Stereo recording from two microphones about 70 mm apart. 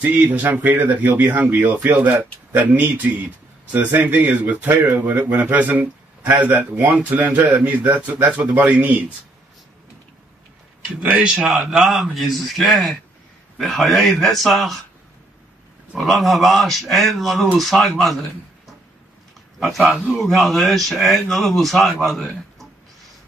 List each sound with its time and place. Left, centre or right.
0.0 s a man's voice: right
11.0 s a man's voice: centre
11.4 s speech: centre
15.9 s speech: centre
19.6 s speech: centre